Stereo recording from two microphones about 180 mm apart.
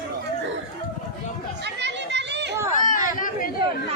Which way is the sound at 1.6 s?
75° right (ahead or behind).